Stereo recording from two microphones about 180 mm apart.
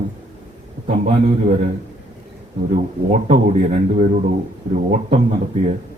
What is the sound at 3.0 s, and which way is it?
Speech, 40° right (ahead or behind).